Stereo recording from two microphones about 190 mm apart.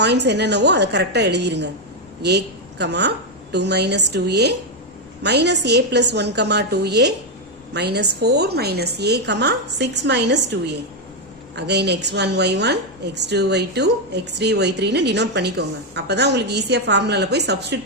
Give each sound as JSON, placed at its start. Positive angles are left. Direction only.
{"t": 0.0, "sound": "a woman's voice", "side_deg": -65}